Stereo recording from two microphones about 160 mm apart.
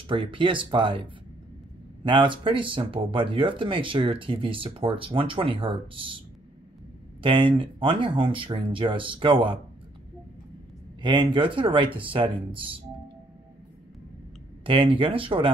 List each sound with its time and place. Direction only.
0.0 s speech: 30° right (ahead or behind)
11.0 s speech: 30° right (ahead or behind)
14.6 s speech: 35° right (ahead or behind)